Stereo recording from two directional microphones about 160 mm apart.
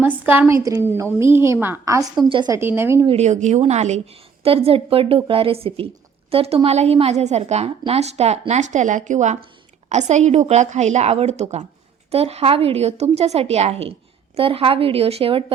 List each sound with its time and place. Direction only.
0.0 s a woman's voice: 10° right (ahead or behind); by 2.6 s 25° right (ahead or behind)
2.6 s a woman's voice: 15° right (ahead or behind)
3.1 s a woman's voice: 45° right (ahead or behind)